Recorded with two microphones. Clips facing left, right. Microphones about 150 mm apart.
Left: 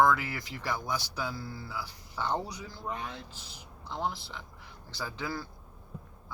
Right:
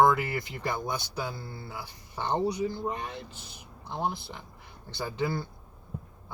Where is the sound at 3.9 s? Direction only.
25° right (ahead or behind).